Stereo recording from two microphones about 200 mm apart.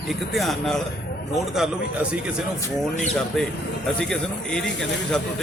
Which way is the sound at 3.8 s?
Centre (ahead or behind).